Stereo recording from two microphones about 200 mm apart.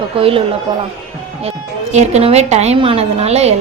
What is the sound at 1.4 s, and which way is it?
A woman's voice, 35° right (ahead or behind).